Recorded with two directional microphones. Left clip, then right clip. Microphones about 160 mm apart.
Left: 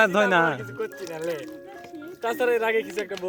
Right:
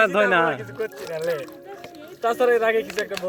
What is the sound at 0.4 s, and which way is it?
Speech, 80° left.